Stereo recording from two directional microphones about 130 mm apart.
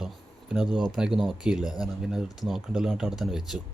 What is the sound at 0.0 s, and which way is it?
Speech, 5° right (ahead or behind).